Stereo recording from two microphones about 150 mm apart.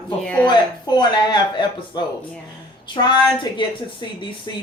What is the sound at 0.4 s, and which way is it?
Speech, 30° left (ahead or behind).